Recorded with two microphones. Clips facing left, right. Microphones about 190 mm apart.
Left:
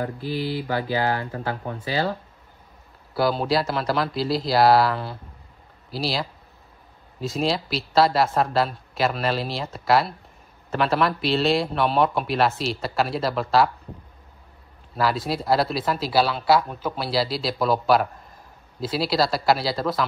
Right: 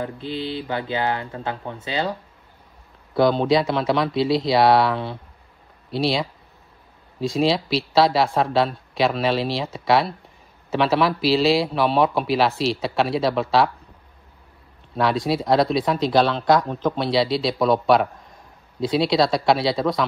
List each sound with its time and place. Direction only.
0.0 s speech: 20° right (ahead or behind)
3.2 s a man's voice: 5° left (ahead or behind)
15.0 s a man's voice: centre (ahead or behind)